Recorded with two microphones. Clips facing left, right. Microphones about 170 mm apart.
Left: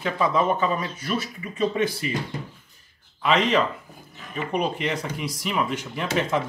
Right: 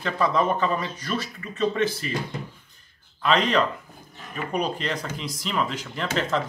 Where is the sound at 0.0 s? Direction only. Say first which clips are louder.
Even; 5° left (ahead or behind).